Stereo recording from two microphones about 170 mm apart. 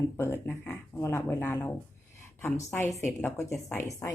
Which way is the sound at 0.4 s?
10° left (ahead or behind).